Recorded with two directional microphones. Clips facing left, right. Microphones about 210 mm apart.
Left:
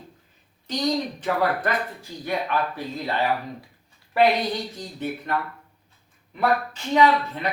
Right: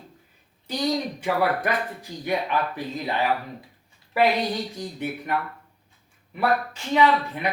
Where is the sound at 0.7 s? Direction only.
10° right (ahead or behind).